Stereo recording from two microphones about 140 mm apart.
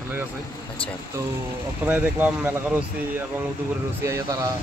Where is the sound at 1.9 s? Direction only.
10° right (ahead or behind).